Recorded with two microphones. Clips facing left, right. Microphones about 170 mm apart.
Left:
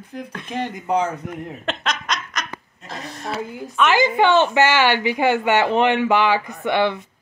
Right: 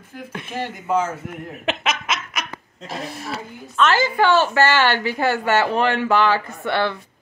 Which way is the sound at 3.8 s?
15° left (ahead or behind).